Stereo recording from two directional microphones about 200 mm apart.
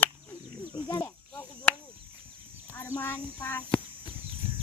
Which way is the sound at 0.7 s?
15° left (ahead or behind).